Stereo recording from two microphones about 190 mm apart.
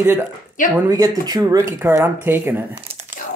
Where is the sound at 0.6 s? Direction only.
45° left (ahead or behind).